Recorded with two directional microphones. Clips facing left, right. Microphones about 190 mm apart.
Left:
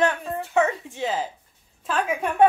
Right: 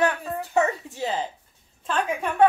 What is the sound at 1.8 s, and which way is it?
Speech, 5° left (ahead or behind).